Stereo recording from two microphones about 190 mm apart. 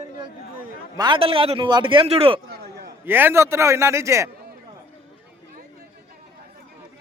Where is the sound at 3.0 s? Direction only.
10° right (ahead or behind).